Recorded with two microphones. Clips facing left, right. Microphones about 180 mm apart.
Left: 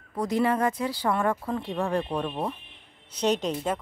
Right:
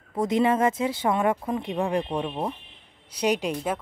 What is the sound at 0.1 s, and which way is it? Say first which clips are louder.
A woman's voice: right 3 dB; 20° right (ahead or behind).